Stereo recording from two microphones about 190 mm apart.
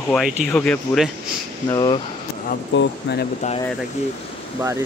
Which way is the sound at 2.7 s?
70° left (ahead or behind).